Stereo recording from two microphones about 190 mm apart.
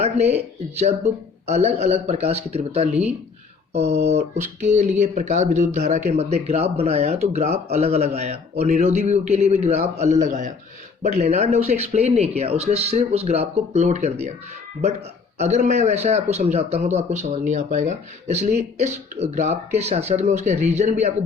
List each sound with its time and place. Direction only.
0.0 s speech: 35° right (ahead or behind)
15.4 s speech: 35° right (ahead or behind)